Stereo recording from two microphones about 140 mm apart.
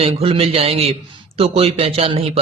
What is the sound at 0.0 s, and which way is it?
A man's voice, 45° right (ahead or behind).